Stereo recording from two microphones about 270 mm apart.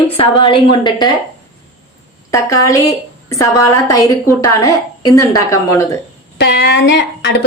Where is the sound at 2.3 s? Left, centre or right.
Centre.